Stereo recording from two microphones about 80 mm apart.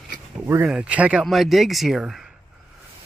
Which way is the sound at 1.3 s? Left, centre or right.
Centre.